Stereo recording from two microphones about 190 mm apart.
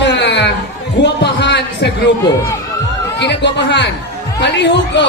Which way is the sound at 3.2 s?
65° left (ahead or behind).